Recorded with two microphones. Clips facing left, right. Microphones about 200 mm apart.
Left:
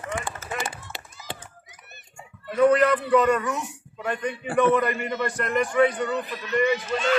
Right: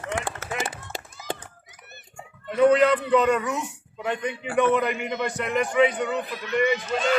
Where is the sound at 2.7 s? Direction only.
15° right (ahead or behind).